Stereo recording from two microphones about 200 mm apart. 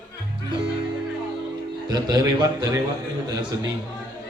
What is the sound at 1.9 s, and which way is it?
Speech, 20° right (ahead or behind).